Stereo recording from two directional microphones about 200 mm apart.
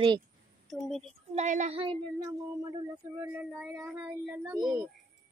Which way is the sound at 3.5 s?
Centre (ahead or behind).